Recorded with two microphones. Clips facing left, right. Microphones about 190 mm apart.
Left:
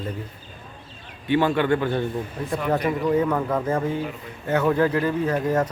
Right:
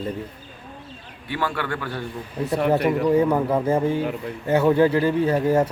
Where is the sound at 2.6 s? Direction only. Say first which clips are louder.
Right 3 dB; 10° right (ahead or behind).